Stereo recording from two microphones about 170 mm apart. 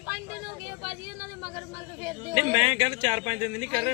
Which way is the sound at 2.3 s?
35° right (ahead or behind).